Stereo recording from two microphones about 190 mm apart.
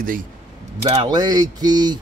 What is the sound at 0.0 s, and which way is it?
Speech, 45° right (ahead or behind).